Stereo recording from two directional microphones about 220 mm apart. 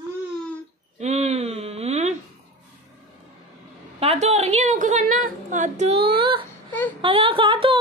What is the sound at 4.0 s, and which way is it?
A woman's voice, 30° right (ahead or behind).